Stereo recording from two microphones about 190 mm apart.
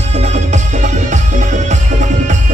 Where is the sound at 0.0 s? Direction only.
35° right (ahead or behind).